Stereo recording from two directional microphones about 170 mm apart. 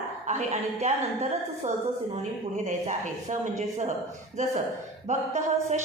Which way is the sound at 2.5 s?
45° right (ahead or behind).